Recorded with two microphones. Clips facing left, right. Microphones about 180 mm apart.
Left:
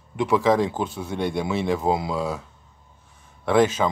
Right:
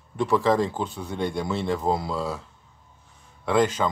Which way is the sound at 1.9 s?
5° left (ahead or behind).